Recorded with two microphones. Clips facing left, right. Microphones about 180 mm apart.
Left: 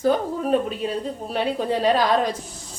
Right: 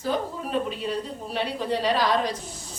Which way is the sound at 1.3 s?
50° left (ahead or behind).